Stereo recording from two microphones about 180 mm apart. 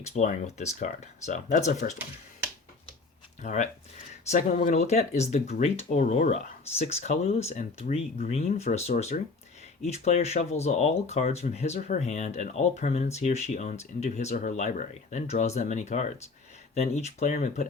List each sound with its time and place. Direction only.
0.0 s speech: 40° left (ahead or behind)
3.4 s speech: 40° left (ahead or behind)